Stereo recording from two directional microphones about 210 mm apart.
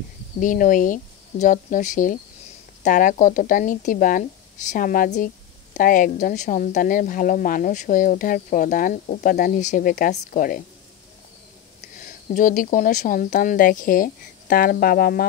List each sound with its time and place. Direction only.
0.4 s a woman's voice: 40° left (ahead or behind)
12.0 s a woman's voice: 40° left (ahead or behind)